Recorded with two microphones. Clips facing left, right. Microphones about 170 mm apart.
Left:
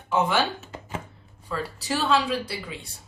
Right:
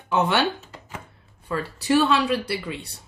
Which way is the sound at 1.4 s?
60° right (ahead or behind).